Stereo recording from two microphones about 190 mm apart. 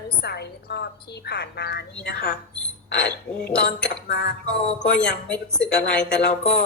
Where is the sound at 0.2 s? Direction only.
60° left (ahead or behind).